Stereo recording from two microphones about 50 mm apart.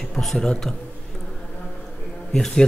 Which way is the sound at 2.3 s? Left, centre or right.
Centre.